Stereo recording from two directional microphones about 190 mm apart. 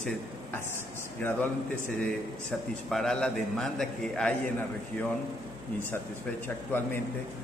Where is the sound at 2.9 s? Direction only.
Centre (ahead or behind).